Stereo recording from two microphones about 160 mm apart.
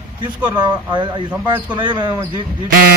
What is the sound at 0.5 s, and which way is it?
Speech, 25° right (ahead or behind).